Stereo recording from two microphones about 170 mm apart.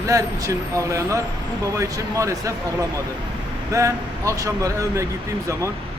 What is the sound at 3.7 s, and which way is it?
Speech, 20° right (ahead or behind).